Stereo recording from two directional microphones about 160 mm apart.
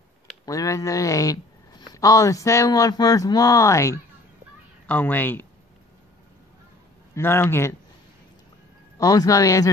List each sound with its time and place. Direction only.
0.5 s speech: 20° left (ahead or behind)
7.2 s speech: 15° left (ahead or behind)
8.9 s speech: 20° left (ahead or behind)